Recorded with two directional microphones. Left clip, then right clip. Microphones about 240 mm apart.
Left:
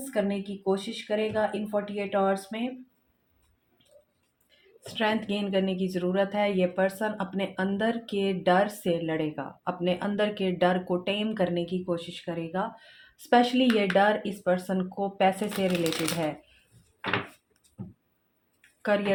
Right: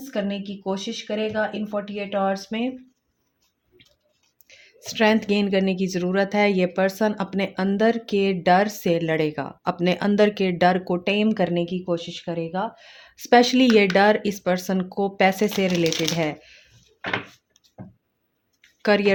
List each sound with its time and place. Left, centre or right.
0.1 s speech: right
4.4 s speech: right
18.8 s speech: right